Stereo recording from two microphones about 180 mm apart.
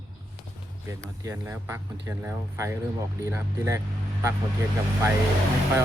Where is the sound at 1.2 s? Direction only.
15° right (ahead or behind).